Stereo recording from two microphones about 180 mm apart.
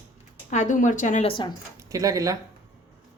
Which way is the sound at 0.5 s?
45° left (ahead or behind).